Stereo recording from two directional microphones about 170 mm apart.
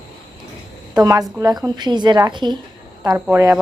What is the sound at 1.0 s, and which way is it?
A woman's voice, 25° right (ahead or behind).